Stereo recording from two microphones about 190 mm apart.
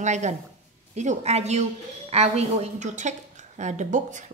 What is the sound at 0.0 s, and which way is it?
Speech, 40° right (ahead or behind).